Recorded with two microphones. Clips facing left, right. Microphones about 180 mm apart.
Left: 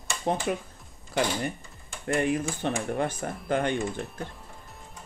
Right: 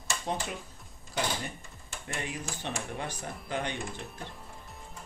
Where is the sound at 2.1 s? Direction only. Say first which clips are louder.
Left 12 dB; 55° left (ahead or behind).